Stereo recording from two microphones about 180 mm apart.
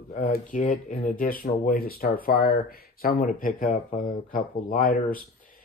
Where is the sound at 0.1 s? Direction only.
45° left (ahead or behind).